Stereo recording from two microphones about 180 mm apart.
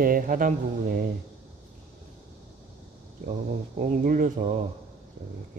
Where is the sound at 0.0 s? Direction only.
50° right (ahead or behind).